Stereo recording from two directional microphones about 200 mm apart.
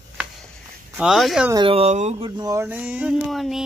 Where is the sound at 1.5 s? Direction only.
25° right (ahead or behind); by 3.6 s centre (ahead or behind).